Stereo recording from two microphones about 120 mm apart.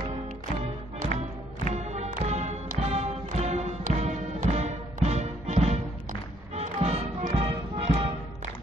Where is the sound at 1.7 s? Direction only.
70° right (ahead or behind).